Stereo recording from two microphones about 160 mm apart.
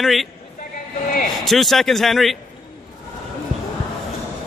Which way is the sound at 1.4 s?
Centre (ahead or behind).